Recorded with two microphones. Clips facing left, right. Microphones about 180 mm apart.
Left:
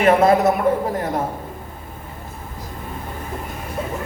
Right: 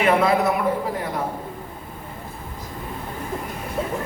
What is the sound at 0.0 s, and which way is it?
Speech, 45° left (ahead or behind).